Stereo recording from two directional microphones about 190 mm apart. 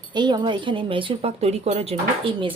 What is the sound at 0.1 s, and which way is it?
Speech, 25° right (ahead or behind).